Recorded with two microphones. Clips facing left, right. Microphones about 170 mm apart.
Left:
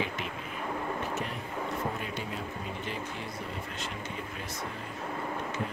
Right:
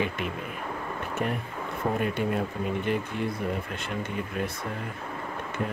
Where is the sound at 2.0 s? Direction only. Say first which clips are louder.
Right 10 dB; 55° right (ahead or behind).